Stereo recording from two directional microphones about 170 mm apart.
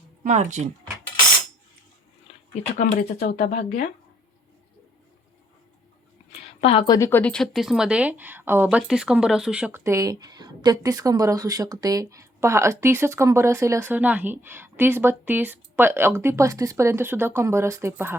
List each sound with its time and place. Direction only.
0.2 s speech: 45° right (ahead or behind)
2.7 s speech: 55° left (ahead or behind)
6.6 s speech: 35° left (ahead or behind); by 18.2 s 15° right (ahead or behind)